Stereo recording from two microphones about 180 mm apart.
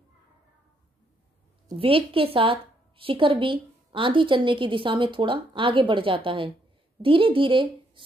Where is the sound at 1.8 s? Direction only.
30° right (ahead or behind).